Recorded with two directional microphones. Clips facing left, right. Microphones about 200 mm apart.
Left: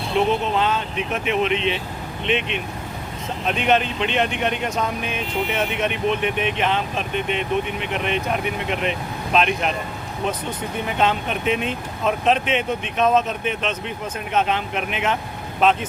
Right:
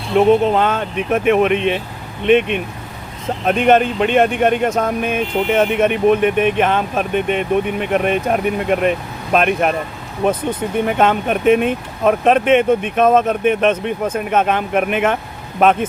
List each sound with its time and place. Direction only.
0.4 s speech: 50° right (ahead or behind)